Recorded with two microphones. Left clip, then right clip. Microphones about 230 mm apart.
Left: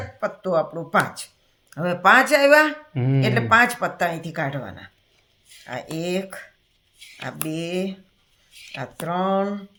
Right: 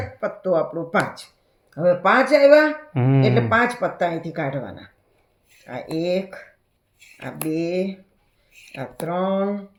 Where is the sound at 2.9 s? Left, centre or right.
Centre.